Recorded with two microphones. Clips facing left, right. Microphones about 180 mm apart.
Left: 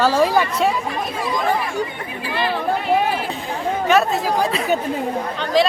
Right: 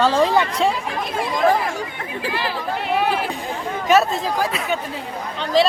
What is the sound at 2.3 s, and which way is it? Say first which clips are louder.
Speech: left 6 dB; 60° left (ahead or behind).